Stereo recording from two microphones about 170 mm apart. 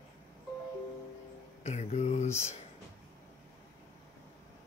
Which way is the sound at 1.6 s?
40° left (ahead or behind).